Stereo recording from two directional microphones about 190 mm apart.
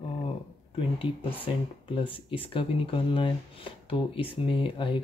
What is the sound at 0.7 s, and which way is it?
Speech, 25° left (ahead or behind).